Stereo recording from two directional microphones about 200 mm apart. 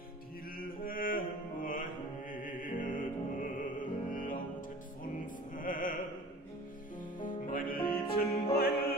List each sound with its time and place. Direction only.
0.6 s mantra: 45° left (ahead or behind)
2.8 s music: 40° left (ahead or behind)
7.2 s music: 40° left (ahead or behind)
7.8 s music: 25° left (ahead or behind)
8.5 s music: 50° left (ahead or behind)